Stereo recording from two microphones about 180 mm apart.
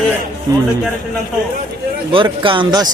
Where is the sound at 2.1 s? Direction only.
30° right (ahead or behind).